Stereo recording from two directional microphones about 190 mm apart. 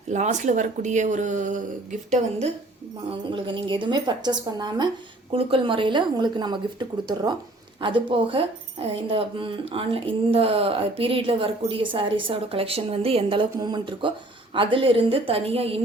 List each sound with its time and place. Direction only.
0.1 s speech: 40° right (ahead or behind)
3.1 s speech: 25° right (ahead or behind)